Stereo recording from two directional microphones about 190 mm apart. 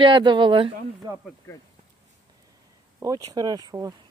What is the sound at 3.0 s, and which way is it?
Speech, 20° right (ahead or behind).